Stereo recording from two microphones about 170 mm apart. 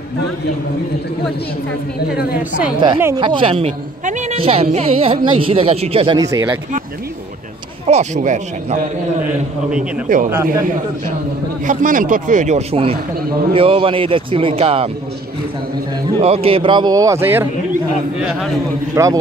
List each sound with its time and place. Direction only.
3.2 s a man's voice: 30° right (ahead or behind)
6.1 s speech: 20° right (ahead or behind)
7.8 s speech: 40° right (ahead or behind)
11.6 s a man's voice: 50° right (ahead or behind); by 14.9 s 35° right (ahead or behind)
16.2 s speech: 35° right (ahead or behind); by 17.5 s 10° right (ahead or behind)
19.0 s speech: 20° right (ahead or behind)